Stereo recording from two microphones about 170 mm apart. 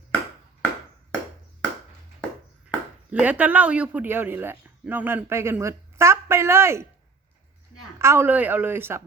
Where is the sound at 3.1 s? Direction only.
10° right (ahead or behind).